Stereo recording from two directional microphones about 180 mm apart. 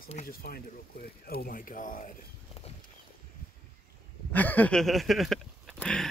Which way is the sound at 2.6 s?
35° left (ahead or behind).